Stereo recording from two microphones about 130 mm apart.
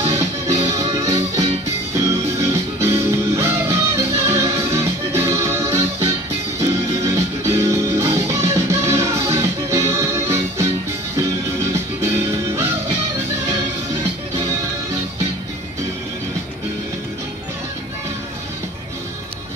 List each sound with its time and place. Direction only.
0.0 s music: 25° right (ahead or behind)
2.8 s music: 20° right (ahead or behind)